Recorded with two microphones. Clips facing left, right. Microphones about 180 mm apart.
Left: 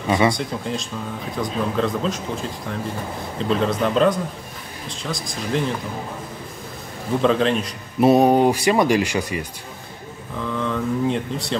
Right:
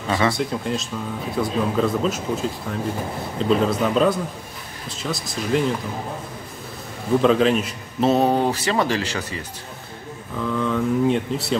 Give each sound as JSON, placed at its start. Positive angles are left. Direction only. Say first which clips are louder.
{"t": 0.3, "sound": "speech", "louder": "right 1 dB", "side_deg": 0}
{"t": 7.2, "sound": "speech", "louder": "right 2 dB", "side_deg": 0}
{"t": 8.0, "sound": "speech", "louder": "left 4 dB", "side_deg": 10}
{"t": 10.3, "sound": "speech", "louder": "right 2 dB", "side_deg": 0}